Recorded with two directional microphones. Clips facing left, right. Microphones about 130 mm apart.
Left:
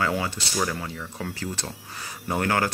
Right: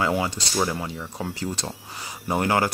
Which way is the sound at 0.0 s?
15° right (ahead or behind).